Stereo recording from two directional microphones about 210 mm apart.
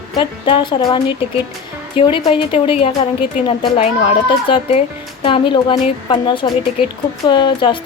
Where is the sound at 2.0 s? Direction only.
25° left (ahead or behind).